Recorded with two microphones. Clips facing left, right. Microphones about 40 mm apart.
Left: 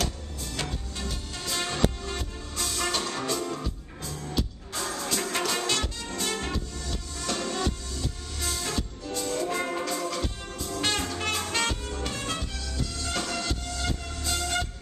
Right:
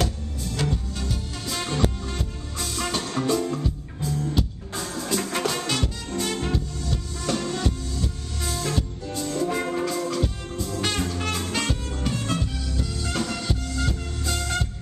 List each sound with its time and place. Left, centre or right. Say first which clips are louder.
0.0 s music: right 4 dB; centre